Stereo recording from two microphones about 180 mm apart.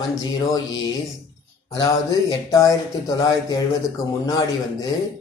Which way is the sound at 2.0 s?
20° left (ahead or behind).